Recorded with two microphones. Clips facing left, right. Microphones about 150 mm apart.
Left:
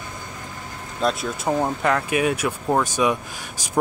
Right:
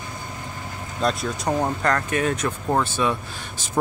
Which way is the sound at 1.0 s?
Centre (ahead or behind).